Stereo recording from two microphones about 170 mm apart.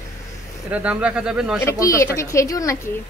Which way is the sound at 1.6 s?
20° left (ahead or behind).